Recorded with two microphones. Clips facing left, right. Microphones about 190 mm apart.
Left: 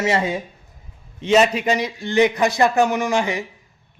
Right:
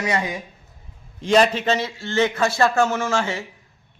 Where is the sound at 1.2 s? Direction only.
5° left (ahead or behind).